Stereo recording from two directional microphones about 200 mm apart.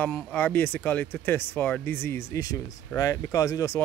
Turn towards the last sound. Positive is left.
turn(degrees=15)  # may be behind; listen again after turning